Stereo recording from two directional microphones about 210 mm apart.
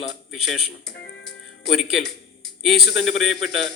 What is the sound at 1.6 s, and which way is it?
A man's voice, centre (ahead or behind).